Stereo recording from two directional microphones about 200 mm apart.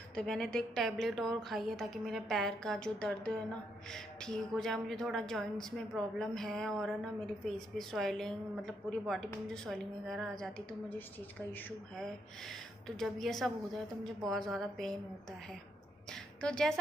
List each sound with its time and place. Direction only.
0.1 s a woman's voice: 5° left (ahead or behind)
16.1 s a woman's voice: 5° left (ahead or behind)